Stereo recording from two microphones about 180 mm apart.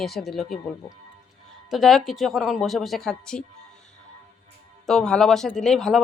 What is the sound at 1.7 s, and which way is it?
A woman's voice, centre (ahead or behind).